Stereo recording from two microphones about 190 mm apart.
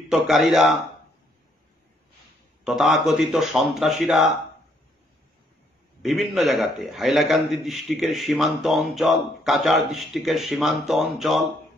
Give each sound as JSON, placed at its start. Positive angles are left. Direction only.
{"t": 0.1, "sound": "a man's voice", "side_deg": 0}
{"t": 2.6, "sound": "a man's voice", "side_deg": 0}
{"t": 6.0, "sound": "a man's voice", "side_deg": 0}